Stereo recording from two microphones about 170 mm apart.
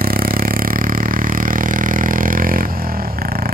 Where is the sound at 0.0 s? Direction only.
60° right (ahead or behind).